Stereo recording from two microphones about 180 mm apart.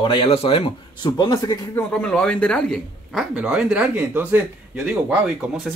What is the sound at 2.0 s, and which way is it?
Speech, 5° left (ahead or behind).